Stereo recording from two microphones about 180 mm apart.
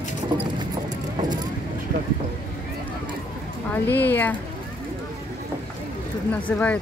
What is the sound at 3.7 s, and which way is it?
Speech, 10° left (ahead or behind).